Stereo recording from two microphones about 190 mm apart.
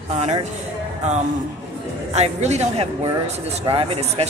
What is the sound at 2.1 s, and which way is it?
Speech, 35° right (ahead or behind).